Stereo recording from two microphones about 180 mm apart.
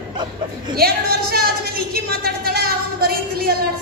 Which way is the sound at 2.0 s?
60° right (ahead or behind).